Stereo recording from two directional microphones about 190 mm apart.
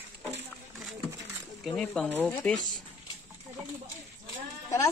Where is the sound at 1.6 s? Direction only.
5° left (ahead or behind).